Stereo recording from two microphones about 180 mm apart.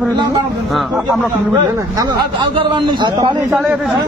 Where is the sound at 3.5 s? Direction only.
5° right (ahead or behind).